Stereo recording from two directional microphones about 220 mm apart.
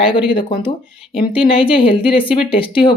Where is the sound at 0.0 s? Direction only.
20° left (ahead or behind).